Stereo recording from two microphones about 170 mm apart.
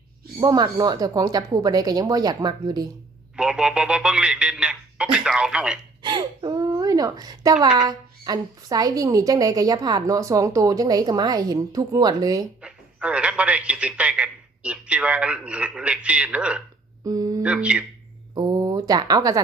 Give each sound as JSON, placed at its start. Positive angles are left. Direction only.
{"t": 0.3, "sound": "a woman's voice", "side_deg": -25}
{"t": 3.3, "sound": "speech", "side_deg": -5}
{"t": 6.0, "sound": "gasp", "side_deg": -25}
{"t": 7.8, "sound": "a woman's voice", "side_deg": -25}
{"t": 12.6, "sound": "speech", "side_deg": -5}
{"t": 17.0, "sound": "speech", "side_deg": -20}
{"t": 17.4, "sound": "speech", "side_deg": -5}
{"t": 18.3, "sound": "speech", "side_deg": -25}